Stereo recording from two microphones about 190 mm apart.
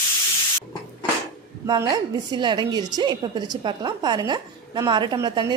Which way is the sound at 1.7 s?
20° right (ahead or behind).